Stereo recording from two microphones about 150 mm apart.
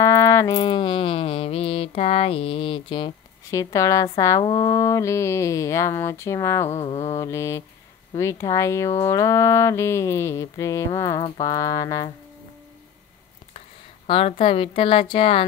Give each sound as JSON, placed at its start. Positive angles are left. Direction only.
{"t": 0.0, "sound": "a sound", "side_deg": 20}
{"t": 4.4, "sound": "speech", "side_deg": 30}
{"t": 6.7, "sound": "mantra", "side_deg": 45}
{"t": 7.2, "sound": "speech", "side_deg": 20}
{"t": 14.0, "sound": "a woman's voice", "side_deg": 40}